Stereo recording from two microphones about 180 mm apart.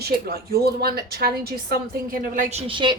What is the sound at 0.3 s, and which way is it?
A woman's voice, 60° right (ahead or behind).